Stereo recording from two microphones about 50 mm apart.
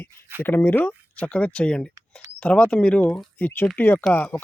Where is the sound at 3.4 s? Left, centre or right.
Left.